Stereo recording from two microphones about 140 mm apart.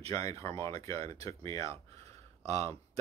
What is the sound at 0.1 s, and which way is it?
Speech, 25° left (ahead or behind).